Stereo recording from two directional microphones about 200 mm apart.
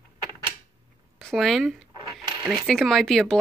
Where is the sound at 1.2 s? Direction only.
Centre (ahead or behind).